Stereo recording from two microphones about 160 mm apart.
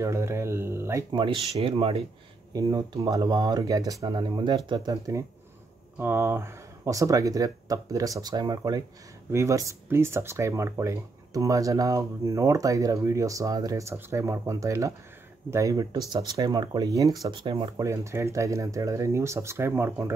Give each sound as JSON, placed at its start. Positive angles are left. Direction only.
{"t": 0.0, "sound": "speech", "side_deg": -15}
{"t": 1.1, "sound": "speech", "side_deg": -30}
{"t": 2.5, "sound": "speech", "side_deg": -20}
{"t": 17.8, "sound": "speech", "side_deg": -20}